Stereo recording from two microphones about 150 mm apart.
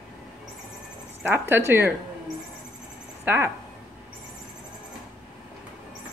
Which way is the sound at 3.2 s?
15° right (ahead or behind).